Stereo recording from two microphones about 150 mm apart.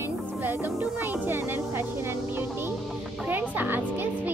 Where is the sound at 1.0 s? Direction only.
15° right (ahead or behind).